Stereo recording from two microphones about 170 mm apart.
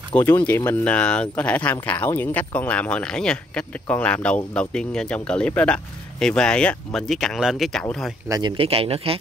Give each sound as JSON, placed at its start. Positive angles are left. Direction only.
{"t": 0.1, "sound": "speech", "side_deg": 10}
{"t": 8.3, "sound": "speech", "side_deg": -25}